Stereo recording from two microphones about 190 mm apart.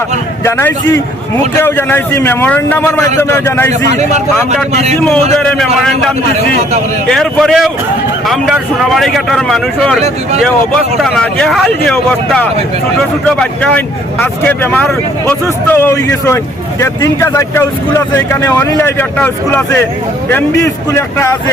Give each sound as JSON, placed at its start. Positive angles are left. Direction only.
{"t": 0.4, "sound": "speech", "side_deg": 10}
{"t": 4.7, "sound": "a man's voice", "side_deg": -35}
{"t": 4.9, "sound": "speech", "side_deg": 5}
{"t": 7.1, "sound": "speech", "side_deg": 0}